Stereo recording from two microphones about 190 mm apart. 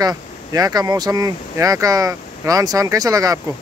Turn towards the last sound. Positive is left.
turn(degrees=-20)  # may be behind; listen again after turning